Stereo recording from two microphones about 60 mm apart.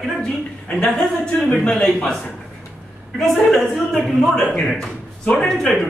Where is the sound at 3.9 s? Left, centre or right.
Centre.